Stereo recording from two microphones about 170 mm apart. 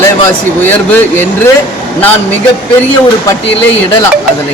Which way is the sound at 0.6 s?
10° left (ahead or behind).